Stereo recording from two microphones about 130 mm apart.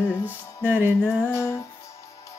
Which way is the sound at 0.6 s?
15° right (ahead or behind).